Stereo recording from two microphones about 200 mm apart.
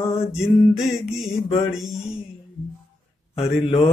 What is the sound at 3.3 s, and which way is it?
Speech, 30° left (ahead or behind).